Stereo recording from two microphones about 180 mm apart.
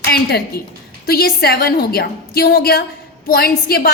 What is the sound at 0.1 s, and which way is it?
A woman's voice, 60° left (ahead or behind).